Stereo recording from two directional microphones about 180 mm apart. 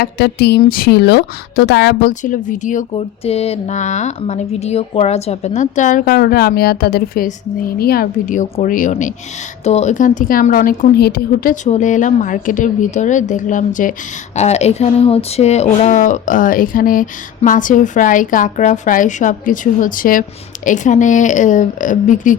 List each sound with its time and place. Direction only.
0.0 s a woman's voice: 65° left (ahead or behind)
2.2 s speech: 45° left (ahead or behind)
3.2 s speech: 35° left (ahead or behind)